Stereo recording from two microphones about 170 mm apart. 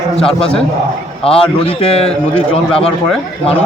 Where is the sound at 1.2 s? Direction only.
35° left (ahead or behind).